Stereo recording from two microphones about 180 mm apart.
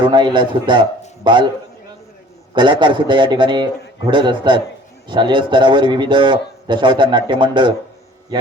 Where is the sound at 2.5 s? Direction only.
25° right (ahead or behind).